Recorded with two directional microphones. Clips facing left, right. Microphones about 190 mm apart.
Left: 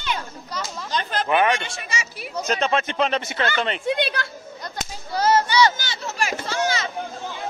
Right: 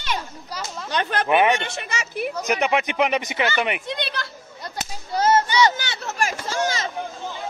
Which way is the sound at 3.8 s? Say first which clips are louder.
Left 6 dB; 50° left (ahead or behind).